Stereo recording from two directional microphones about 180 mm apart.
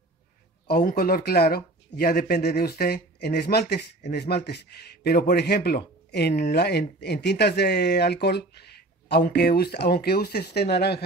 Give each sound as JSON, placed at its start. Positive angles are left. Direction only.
{"t": 0.7, "sound": "speech", "side_deg": 55}